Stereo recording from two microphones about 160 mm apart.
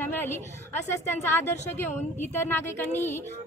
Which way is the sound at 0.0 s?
15° left (ahead or behind).